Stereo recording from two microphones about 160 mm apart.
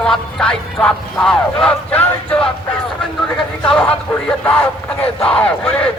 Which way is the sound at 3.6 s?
5° left (ahead or behind).